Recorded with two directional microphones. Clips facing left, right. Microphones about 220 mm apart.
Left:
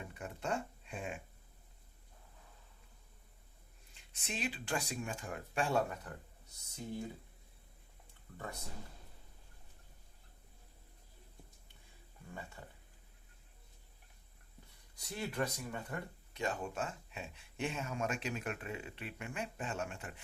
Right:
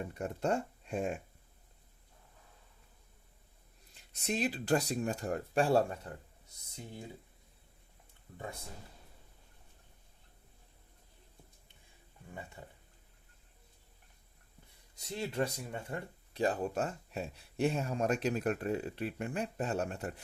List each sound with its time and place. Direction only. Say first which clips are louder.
0.0 s speech: right 8 dB; 40° right (ahead or behind)
3.9 s speech: right 9 dB; 40° right (ahead or behind)
8.3 s speech: right 2 dB; 20° right (ahead or behind)
12.3 s speech: right 2 dB; 20° right (ahead or behind)
14.9 s speech: right 4 dB; 25° right (ahead or behind); by 20.2 s 40° right (ahead or behind)